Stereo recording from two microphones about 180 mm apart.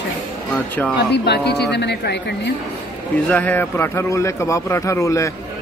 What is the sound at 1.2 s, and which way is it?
Speech, 65° left (ahead or behind).